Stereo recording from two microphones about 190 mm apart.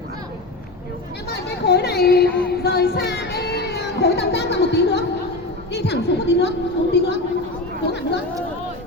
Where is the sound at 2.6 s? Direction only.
60° left (ahead or behind).